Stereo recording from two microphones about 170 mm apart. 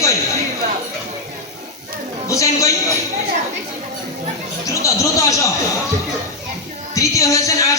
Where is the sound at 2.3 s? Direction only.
20° left (ahead or behind).